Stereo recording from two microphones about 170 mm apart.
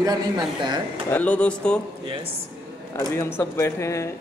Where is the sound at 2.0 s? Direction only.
30° right (ahead or behind).